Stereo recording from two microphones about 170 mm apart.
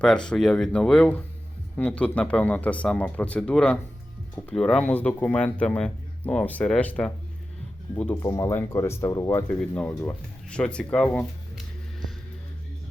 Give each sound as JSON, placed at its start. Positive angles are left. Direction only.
{"t": 0.0, "sound": "speech", "side_deg": 5}
{"t": 8.2, "sound": "speech", "side_deg": 20}
{"t": 9.5, "sound": "speech", "side_deg": 10}